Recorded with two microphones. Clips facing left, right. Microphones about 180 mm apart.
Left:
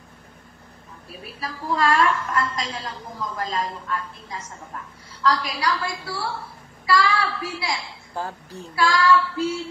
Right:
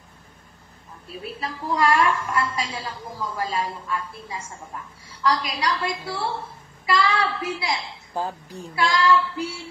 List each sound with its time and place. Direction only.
1.0 s a woman's voice: 20° right (ahead or behind)